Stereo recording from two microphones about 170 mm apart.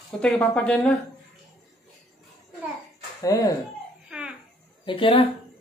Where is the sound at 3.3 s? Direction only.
20° left (ahead or behind).